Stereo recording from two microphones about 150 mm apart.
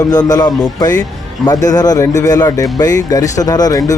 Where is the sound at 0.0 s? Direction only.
25° left (ahead or behind).